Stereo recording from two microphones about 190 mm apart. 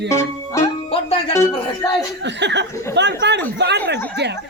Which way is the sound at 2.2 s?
65° right (ahead or behind).